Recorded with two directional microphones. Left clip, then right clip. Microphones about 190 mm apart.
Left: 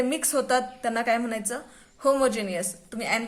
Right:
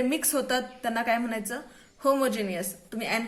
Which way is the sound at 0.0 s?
15° left (ahead or behind).